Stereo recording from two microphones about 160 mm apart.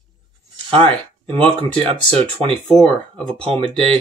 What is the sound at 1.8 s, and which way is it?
Speech, 35° right (ahead or behind).